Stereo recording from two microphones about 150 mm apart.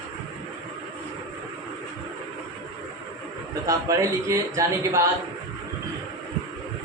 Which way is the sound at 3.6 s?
20° right (ahead or behind).